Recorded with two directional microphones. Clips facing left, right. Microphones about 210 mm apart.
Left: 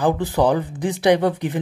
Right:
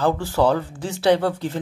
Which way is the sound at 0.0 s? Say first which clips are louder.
Left 1 dB; 15° left (ahead or behind).